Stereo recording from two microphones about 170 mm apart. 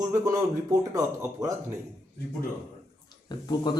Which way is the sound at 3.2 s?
25° left (ahead or behind).